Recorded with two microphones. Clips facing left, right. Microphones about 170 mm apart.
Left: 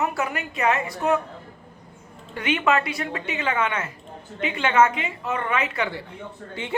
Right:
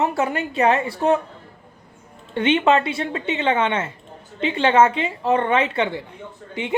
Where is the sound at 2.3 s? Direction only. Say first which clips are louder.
Right 5 dB; 25° right (ahead or behind).